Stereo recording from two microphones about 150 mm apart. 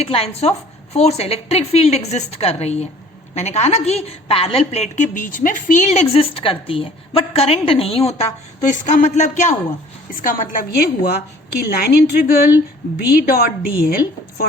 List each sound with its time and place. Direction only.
0.0 s a woman's voice: 40° left (ahead or behind)
10.1 s a woman's voice: 65° left (ahead or behind)
11.6 s a woman's voice: 90° left